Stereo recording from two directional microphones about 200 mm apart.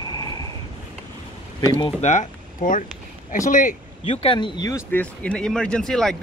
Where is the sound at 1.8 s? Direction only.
35° left (ahead or behind).